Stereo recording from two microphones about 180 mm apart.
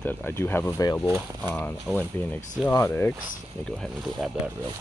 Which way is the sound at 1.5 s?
10° left (ahead or behind).